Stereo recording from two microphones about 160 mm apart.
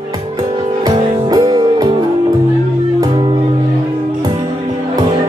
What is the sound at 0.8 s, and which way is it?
Music, 25° right (ahead or behind).